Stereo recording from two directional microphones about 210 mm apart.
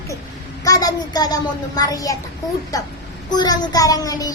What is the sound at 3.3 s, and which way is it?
A child's voice, 20° left (ahead or behind).